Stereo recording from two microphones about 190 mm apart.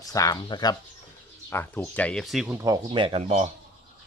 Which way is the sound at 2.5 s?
15° right (ahead or behind).